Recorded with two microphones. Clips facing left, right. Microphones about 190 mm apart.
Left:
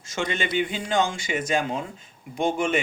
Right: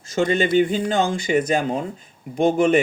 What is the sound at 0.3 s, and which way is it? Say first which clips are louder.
Speech: right 9 dB; 45° right (ahead or behind).